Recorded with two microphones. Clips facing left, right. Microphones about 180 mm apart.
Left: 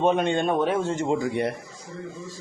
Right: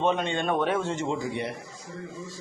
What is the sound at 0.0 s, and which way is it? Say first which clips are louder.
Speech: left 4 dB; 50° left (ahead or behind).